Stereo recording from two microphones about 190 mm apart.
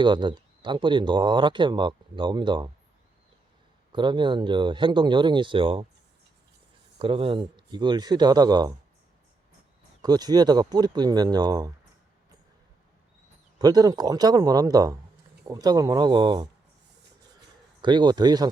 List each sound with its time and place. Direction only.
0.0 s speech: 25° right (ahead or behind)
3.9 s speech: 25° right (ahead or behind)
7.0 s speech: 30° right (ahead or behind)
10.0 s speech: 20° right (ahead or behind)
13.6 s speech: 20° right (ahead or behind)
17.8 s speech: 25° right (ahead or behind)